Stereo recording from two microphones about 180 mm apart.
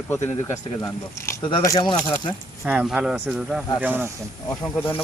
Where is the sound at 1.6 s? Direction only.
20° left (ahead or behind).